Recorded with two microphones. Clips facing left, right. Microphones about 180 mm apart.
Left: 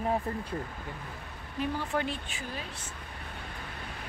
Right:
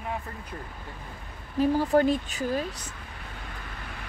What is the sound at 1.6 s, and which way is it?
Speech, 35° right (ahead or behind).